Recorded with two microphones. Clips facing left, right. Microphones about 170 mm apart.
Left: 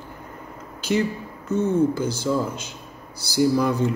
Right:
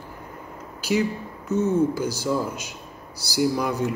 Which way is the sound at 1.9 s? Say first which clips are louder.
Left 1 dB; 10° right (ahead or behind).